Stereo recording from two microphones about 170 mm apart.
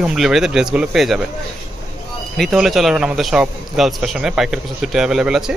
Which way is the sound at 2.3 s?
Centre (ahead or behind).